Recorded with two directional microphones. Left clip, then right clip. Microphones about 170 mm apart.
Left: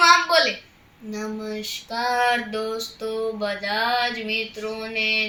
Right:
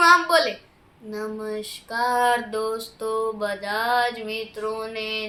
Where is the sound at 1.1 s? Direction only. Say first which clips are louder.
Right 1 dB; 25° right (ahead or behind).